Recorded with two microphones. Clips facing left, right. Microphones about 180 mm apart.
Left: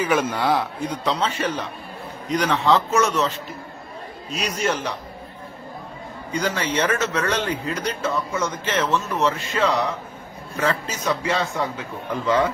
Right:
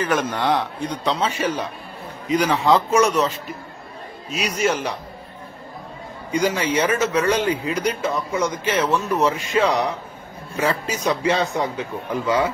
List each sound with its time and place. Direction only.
0.0 s a man's voice: 10° left (ahead or behind); by 4.9 s 10° right (ahead or behind)
6.3 s a man's voice: 10° right (ahead or behind)